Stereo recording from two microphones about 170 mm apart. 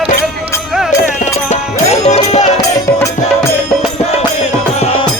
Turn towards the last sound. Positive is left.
turn(degrees=35)  # may be behind; listen again after turning